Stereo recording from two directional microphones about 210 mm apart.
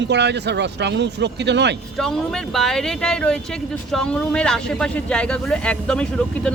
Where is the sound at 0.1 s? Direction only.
55° right (ahead or behind).